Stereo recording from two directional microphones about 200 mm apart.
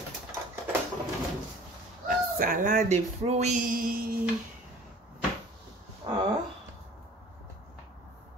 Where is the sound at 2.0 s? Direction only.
45° right (ahead or behind).